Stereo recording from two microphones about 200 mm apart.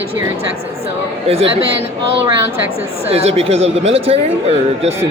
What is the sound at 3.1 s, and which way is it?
Speech, 30° right (ahead or behind).